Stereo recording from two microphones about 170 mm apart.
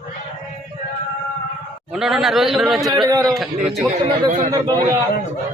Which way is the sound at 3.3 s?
Centre (ahead or behind).